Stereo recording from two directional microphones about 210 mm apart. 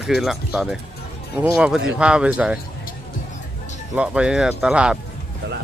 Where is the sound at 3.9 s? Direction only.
5° right (ahead or behind).